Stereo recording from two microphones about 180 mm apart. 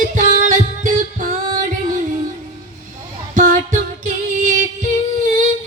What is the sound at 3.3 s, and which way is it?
Female singing, 45° right (ahead or behind).